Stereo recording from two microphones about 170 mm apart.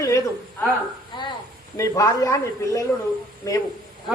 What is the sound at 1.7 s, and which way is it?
A man's voice, 20° left (ahead or behind).